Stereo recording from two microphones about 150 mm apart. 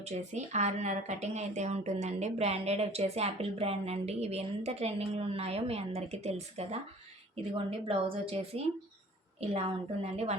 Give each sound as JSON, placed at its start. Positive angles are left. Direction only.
{"t": 0.0, "sound": "a woman's voice", "side_deg": -50}